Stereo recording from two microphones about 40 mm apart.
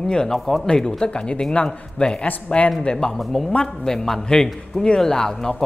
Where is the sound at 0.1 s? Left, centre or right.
Centre.